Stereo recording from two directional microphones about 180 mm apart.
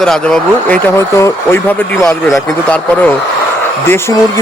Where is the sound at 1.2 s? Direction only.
15° left (ahead or behind).